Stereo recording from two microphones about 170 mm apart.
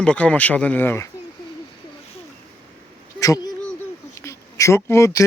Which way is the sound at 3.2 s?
20° left (ahead or behind).